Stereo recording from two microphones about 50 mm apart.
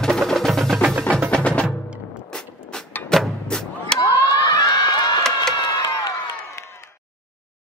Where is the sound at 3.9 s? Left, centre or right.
Centre.